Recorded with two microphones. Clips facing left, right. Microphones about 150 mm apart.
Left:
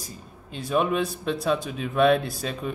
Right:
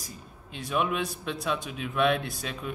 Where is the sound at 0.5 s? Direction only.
35° left (ahead or behind).